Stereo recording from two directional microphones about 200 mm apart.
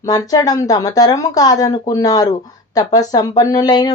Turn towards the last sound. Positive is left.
turn(degrees=20)  # may be behind; listen again after turning